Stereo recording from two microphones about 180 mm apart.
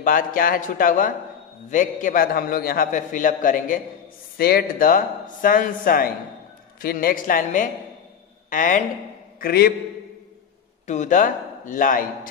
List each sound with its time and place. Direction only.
0.0 s a man's voice: 50° left (ahead or behind)
10.9 s a man's voice: 45° left (ahead or behind)